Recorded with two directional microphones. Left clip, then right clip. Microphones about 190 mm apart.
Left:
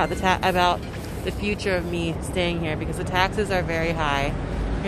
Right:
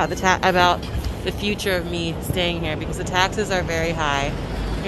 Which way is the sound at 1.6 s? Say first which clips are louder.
Right 2 dB; 5° left (ahead or behind).